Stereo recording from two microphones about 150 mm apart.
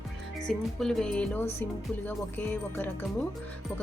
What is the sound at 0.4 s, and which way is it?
Speech, 5° left (ahead or behind).